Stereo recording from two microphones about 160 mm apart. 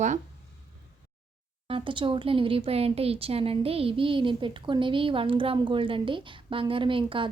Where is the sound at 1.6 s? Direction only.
35° right (ahead or behind).